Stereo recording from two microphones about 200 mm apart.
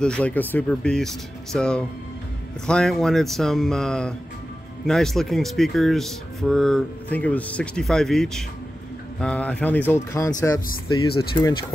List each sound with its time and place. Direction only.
0.0 s speech: 5° left (ahead or behind)
11.1 s speech: 25° left (ahead or behind)